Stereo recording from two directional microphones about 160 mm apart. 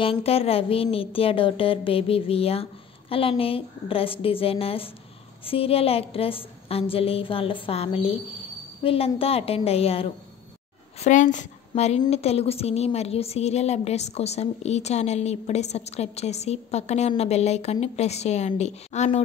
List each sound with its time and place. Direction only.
0.0 s a woman's voice: 35° left (ahead or behind)
11.0 s a woman's voice: 50° left (ahead or behind)